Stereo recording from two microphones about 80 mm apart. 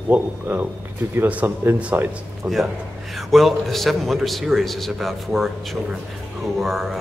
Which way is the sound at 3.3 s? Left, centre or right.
Centre.